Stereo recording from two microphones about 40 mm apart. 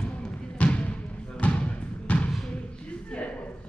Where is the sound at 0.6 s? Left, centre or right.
Left.